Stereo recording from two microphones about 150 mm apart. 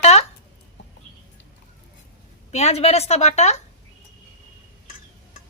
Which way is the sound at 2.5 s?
45° left (ahead or behind).